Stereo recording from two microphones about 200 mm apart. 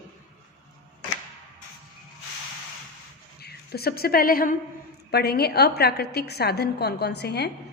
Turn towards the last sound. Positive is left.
turn(degrees=55)  # may be behind; listen again after turning